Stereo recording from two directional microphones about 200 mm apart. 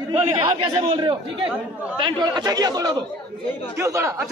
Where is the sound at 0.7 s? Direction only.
25° right (ahead or behind).